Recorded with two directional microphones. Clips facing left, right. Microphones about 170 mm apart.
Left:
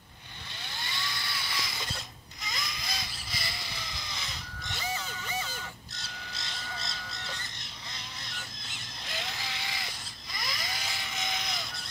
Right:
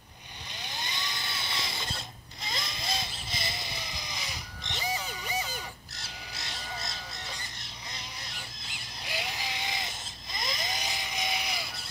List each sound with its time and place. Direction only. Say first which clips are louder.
0.6 s mechanisms: right 1 dB; 20° right (ahead or behind)
6.5 s crow: right 2 dB; 15° right (ahead or behind)
9.0 s sheep: right 3 dB; 10° right (ahead or behind)